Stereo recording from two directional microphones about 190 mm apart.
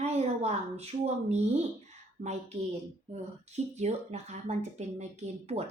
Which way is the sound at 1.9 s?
35° right (ahead or behind).